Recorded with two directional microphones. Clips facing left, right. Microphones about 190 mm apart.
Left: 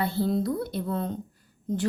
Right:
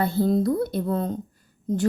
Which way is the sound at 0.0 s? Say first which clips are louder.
Right 5 dB; 45° right (ahead or behind).